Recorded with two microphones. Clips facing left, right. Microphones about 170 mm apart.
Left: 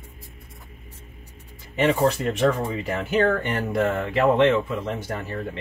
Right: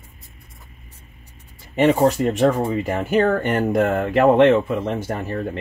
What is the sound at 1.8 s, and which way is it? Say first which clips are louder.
Speech: right 4 dB; 40° right (ahead or behind).